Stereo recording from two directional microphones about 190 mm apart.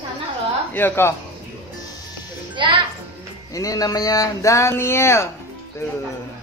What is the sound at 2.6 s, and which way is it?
Speech, 25° right (ahead or behind).